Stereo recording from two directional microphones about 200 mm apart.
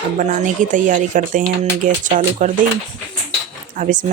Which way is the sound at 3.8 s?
40° right (ahead or behind).